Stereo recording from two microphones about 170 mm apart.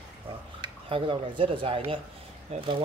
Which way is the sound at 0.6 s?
30° right (ahead or behind).